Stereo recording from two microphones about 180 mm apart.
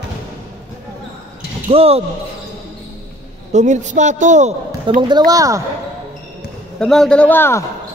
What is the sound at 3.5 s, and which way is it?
A man's voice, 40° right (ahead or behind).